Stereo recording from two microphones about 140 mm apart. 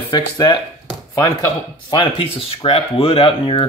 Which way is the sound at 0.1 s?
30° left (ahead or behind).